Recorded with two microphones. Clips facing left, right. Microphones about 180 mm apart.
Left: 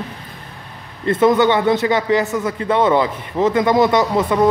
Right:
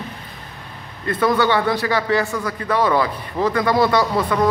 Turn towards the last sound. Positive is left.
turn(degrees=25)  # may be behind; listen again after turning